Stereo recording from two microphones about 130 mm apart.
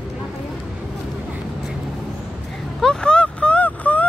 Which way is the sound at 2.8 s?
5° left (ahead or behind).